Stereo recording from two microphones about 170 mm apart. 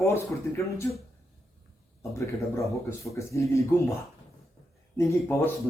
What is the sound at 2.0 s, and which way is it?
Speech, 15° left (ahead or behind).